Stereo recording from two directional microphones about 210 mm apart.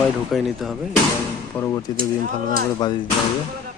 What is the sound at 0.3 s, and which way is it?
Speech, centre (ahead or behind).